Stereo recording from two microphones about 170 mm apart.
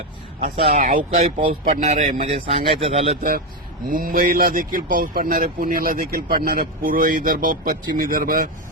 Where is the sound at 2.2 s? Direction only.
35° right (ahead or behind).